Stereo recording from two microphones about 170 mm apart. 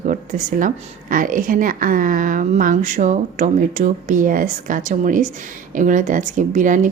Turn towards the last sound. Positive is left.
turn(degrees=-50)  # may be behind; listen again after turning